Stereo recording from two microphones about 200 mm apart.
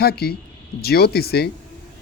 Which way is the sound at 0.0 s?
50° left (ahead or behind).